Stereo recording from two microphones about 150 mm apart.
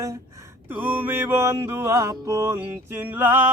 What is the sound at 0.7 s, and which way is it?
Mantra, 10° right (ahead or behind).